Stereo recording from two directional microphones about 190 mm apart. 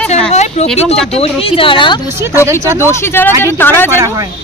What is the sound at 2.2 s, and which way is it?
Speech, 15° right (ahead or behind).